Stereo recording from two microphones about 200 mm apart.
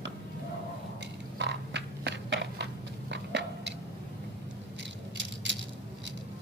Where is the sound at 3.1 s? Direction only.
60° right (ahead or behind).